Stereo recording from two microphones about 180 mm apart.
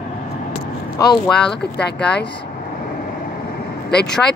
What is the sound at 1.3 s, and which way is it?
Speech, 5° left (ahead or behind).